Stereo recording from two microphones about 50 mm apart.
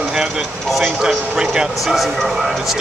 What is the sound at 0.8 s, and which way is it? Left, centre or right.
Speech, centre.